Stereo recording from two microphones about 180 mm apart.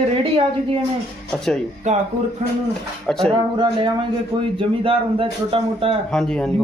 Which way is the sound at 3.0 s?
5° left (ahead or behind).